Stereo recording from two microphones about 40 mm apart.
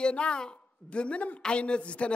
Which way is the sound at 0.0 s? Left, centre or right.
Left.